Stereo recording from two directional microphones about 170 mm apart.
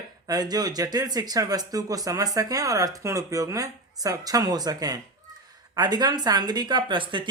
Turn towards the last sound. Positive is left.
turn(degrees=-30)  # may be behind; listen again after turning